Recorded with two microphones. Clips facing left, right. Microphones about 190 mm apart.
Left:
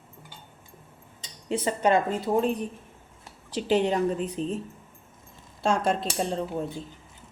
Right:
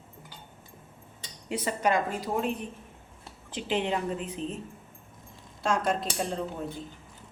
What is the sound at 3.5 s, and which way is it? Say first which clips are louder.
Speech: left 5 dB; 40° left (ahead or behind).